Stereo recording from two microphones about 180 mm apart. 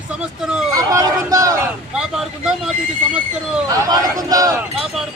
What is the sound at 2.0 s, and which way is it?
Speech, 5° right (ahead or behind).